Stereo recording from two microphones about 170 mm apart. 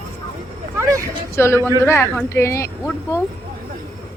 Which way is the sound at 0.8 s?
20° right (ahead or behind).